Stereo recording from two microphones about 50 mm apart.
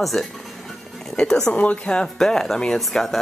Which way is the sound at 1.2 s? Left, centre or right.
Centre.